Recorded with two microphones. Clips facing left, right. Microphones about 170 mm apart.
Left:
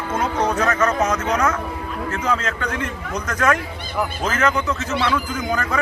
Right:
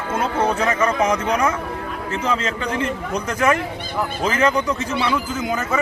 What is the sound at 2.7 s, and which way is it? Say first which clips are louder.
A man's voice: right 3 dB; 30° right (ahead or behind).